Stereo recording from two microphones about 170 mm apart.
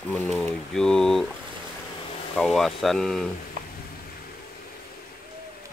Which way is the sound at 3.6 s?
50° right (ahead or behind).